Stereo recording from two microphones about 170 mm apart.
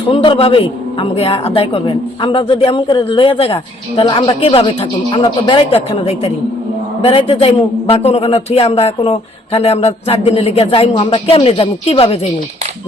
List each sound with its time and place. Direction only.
0.1 s a man's voice: 30° left (ahead or behind)